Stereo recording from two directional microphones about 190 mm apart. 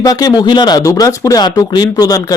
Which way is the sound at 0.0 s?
20° left (ahead or behind).